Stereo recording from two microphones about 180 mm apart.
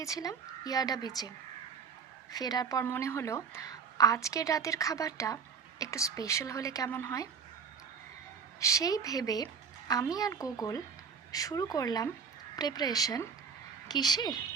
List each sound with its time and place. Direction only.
0.0 s speech: 20° left (ahead or behind)
2.3 s a woman's voice: 20° left (ahead or behind)
8.6 s speech: 20° left (ahead or behind)